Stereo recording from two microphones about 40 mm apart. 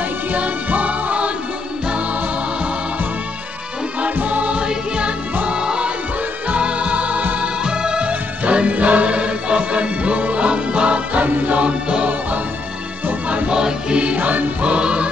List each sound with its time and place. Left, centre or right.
0.3 s music: right
4.0 s music: right
7.3 s music: centre
8.1 s music: right
13.3 s music: right
14.1 s music: right
14.6 s music: right